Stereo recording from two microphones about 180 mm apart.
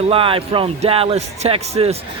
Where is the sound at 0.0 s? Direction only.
30° right (ahead or behind).